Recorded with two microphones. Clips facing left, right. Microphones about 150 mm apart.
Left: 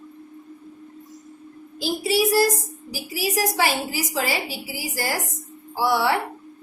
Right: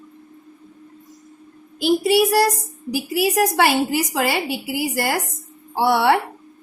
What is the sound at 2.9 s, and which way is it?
A woman's voice, 60° right (ahead or behind).